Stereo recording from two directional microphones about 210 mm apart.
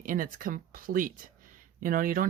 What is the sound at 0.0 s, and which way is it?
Speech, 40° right (ahead or behind).